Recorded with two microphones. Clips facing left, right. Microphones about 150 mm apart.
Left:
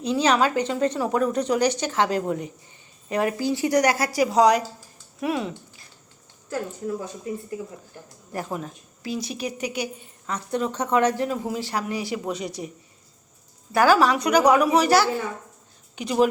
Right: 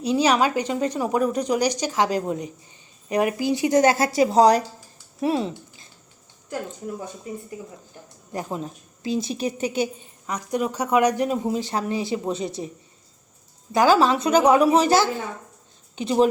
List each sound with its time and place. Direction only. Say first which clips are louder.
0.0 s a woman's voice: right 1 dB; 10° right (ahead or behind)
8.3 s speech: right 1 dB; 20° right (ahead or behind)
10.2 s speech: right 1 dB; 15° right (ahead or behind)
13.7 s speech: right 1 dB; 20° right (ahead or behind)